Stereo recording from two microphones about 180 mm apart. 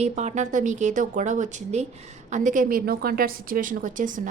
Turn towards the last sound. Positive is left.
turn(degrees=-45)  # may be behind; listen again after turning